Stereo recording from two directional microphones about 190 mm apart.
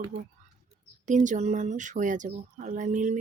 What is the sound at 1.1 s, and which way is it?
Speech, 40° right (ahead or behind).